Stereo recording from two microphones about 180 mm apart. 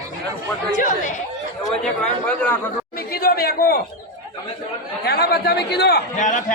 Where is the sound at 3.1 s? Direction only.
55° left (ahead or behind).